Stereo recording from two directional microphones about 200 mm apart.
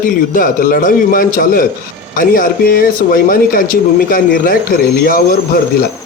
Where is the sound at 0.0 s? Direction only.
45° left (ahead or behind).